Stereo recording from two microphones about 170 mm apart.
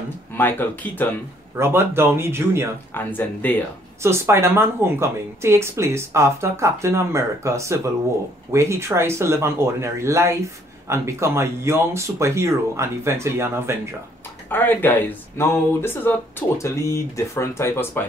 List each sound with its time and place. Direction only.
0.3 s speech: 10° left (ahead or behind)
1.6 s speech: 15° right (ahead or behind)
2.9 s speech: 10° left (ahead or behind)
4.0 s speech: 15° right (ahead or behind)
14.5 s speech: 10° left (ahead or behind)